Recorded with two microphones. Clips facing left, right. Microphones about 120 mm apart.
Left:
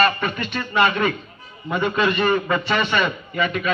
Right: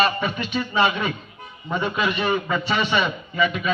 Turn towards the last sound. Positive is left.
turn(degrees=50)  # may be behind; listen again after turning